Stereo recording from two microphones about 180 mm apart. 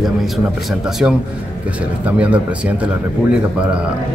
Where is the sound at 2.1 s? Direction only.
5° right (ahead or behind).